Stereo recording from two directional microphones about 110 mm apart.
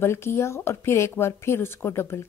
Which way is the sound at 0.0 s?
20° left (ahead or behind).